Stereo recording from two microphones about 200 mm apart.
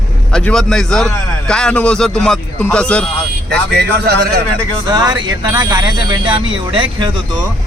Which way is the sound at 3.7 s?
50° right (ahead or behind).